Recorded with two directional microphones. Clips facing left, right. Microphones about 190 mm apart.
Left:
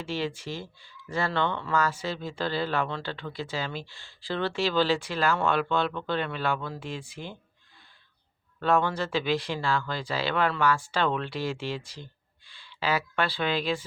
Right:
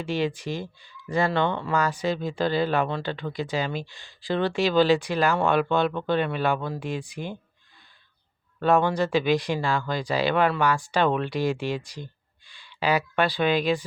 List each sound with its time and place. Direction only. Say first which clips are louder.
0.0 s speech: right 5 dB; 15° right (ahead or behind)
8.5 s speech: right 4 dB; 15° right (ahead or behind)